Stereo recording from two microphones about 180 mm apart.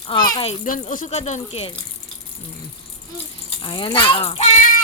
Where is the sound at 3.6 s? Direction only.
25° left (ahead or behind).